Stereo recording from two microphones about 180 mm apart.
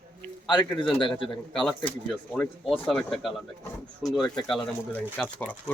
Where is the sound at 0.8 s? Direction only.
30° left (ahead or behind).